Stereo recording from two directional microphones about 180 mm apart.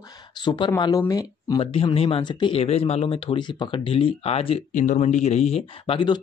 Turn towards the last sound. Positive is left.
turn(degrees=25)  # may be behind; listen again after turning